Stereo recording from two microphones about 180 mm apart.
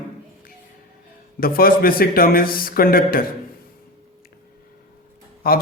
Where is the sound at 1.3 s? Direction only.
55° left (ahead or behind).